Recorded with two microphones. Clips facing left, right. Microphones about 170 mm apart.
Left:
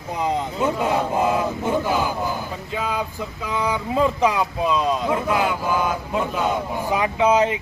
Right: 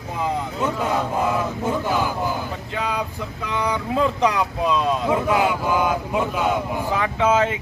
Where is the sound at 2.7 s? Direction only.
Centre (ahead or behind).